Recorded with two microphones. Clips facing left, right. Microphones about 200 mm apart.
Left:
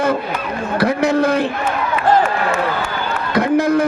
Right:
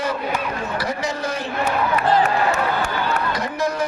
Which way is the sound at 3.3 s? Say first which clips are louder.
Left 9 dB; 55° left (ahead or behind).